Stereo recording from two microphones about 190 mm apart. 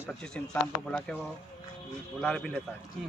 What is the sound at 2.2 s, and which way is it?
Speech, 5° left (ahead or behind).